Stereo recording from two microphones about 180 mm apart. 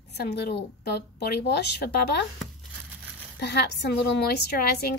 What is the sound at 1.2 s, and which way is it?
Speech, 60° left (ahead or behind).